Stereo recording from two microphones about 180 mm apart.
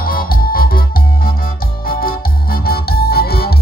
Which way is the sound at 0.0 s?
55° left (ahead or behind).